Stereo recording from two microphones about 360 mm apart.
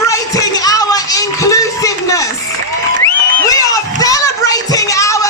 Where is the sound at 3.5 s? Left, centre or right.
Centre.